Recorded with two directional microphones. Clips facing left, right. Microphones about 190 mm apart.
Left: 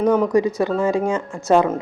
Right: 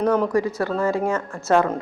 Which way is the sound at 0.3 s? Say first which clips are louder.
Left 4 dB; 20° left (ahead or behind).